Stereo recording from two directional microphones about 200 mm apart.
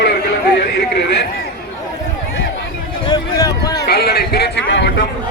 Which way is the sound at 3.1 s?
20° left (ahead or behind).